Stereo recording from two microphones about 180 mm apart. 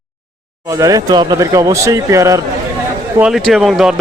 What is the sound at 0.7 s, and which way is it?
Speech, 15° right (ahead or behind).